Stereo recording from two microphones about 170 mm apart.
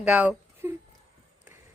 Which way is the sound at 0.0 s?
10° right (ahead or behind).